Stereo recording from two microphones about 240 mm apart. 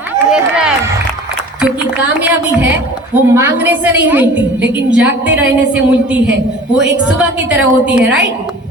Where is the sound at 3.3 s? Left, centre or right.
Centre.